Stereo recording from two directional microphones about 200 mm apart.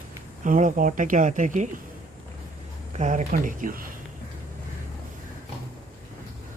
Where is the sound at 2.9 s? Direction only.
40° right (ahead or behind).